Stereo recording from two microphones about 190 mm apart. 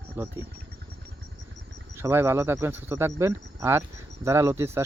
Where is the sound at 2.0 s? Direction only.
15° right (ahead or behind).